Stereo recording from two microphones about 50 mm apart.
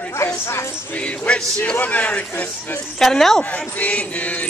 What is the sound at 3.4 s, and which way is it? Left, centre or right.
Chant, left.